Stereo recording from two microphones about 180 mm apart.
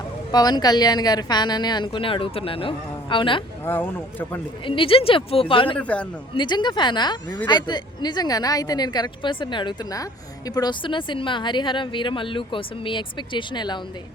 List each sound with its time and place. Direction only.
0.3 s a woman's voice: 20° left (ahead or behind)
3.7 s speech: 10° left (ahead or behind)
4.6 s a woman's voice: 30° left (ahead or behind)
5.7 s speech: 5° left (ahead or behind)
6.3 s a woman's voice: 25° left (ahead or behind)